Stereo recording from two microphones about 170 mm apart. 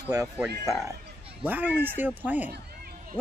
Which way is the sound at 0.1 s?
20° right (ahead or behind).